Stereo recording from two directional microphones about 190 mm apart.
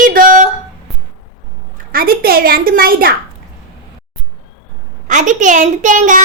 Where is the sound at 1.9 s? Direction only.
50° right (ahead or behind).